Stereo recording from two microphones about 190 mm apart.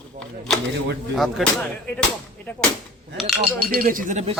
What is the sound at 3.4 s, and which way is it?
Speech, 50° right (ahead or behind).